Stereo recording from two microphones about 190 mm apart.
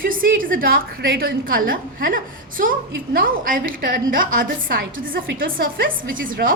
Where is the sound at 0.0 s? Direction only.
45° right (ahead or behind).